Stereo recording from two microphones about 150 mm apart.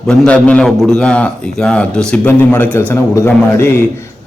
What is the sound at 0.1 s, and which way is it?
A man's voice, 5° left (ahead or behind).